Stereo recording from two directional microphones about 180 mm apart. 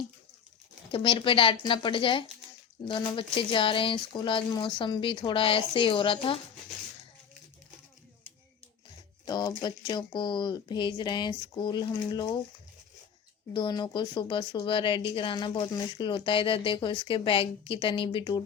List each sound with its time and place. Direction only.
0.9 s speech: 30° left (ahead or behind)
9.2 s speech: 25° left (ahead or behind)
13.5 s speech: 25° left (ahead or behind)